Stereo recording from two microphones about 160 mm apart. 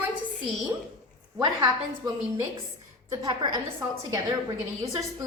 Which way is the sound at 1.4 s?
20° right (ahead or behind).